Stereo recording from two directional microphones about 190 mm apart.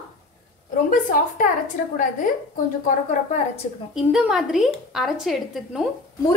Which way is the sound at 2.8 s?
35° left (ahead or behind).